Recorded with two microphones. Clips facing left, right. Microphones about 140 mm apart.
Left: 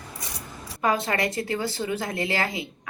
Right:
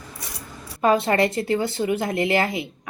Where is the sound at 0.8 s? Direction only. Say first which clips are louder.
Right 6 dB; 25° right (ahead or behind).